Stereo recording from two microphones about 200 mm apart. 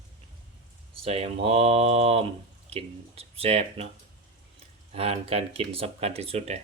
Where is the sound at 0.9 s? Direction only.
30° right (ahead or behind).